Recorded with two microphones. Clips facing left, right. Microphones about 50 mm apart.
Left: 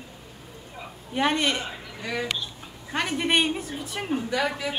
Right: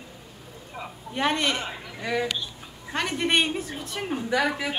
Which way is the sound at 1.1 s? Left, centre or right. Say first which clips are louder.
Left 1 dB; centre.